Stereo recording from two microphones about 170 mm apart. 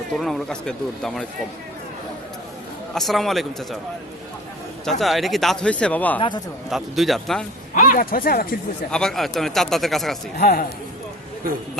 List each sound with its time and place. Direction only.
0.1 s speech: centre (ahead or behind)
2.9 s speech: centre (ahead or behind)
4.9 s speech: centre (ahead or behind)
6.1 s speech: 30° left (ahead or behind)
6.7 s speech: centre (ahead or behind)
7.8 s speech: 55° left (ahead or behind)
8.9 s speech: 5° left (ahead or behind)
10.3 s speech: 65° left (ahead or behind)